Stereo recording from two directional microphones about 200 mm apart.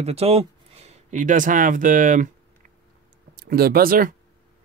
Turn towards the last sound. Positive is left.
turn(degrees=-45)  # may be behind; listen again after turning